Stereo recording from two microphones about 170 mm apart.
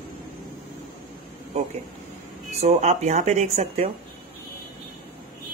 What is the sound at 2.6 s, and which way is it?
Speech, 40° right (ahead or behind).